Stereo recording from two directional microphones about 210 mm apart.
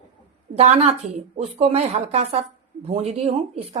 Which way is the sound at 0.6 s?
30° right (ahead or behind).